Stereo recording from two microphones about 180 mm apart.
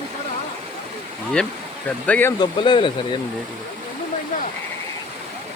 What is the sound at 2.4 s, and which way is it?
Speech, 25° left (ahead or behind).